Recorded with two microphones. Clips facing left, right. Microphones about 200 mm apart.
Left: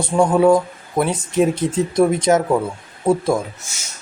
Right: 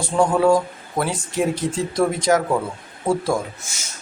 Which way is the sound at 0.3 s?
20° left (ahead or behind).